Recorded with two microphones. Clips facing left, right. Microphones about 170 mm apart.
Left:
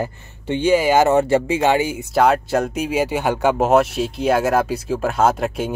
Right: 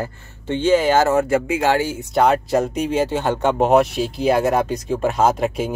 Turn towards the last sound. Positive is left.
turn(degrees=0)  # may be behind; listen again after turning